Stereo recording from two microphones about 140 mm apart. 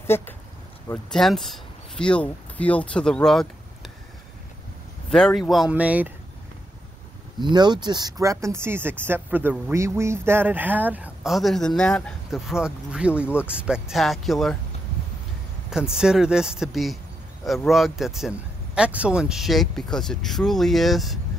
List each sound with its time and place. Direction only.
0.1 s speech: 15° left (ahead or behind)
1.1 s speech: centre (ahead or behind)
5.1 s speech: 5° left (ahead or behind)
7.3 s speech: 30° right (ahead or behind); by 11.1 s 10° right (ahead or behind)
11.2 s speech: centre (ahead or behind)
15.7 s speech: 5° right (ahead or behind)